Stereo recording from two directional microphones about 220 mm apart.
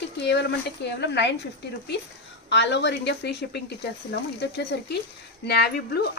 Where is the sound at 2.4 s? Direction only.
50° left (ahead or behind).